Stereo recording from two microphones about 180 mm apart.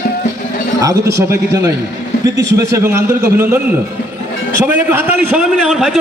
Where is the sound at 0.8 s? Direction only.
15° right (ahead or behind).